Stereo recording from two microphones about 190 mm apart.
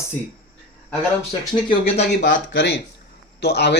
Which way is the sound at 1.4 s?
25° left (ahead or behind).